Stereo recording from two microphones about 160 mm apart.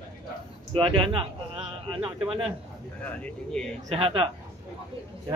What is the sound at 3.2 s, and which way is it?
Speech, 5° left (ahead or behind).